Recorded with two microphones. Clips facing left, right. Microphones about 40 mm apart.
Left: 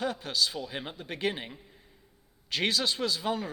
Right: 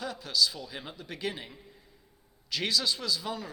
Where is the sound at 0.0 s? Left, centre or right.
Left.